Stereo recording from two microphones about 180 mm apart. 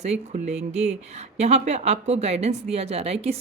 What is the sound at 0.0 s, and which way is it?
Speech, 40° right (ahead or behind).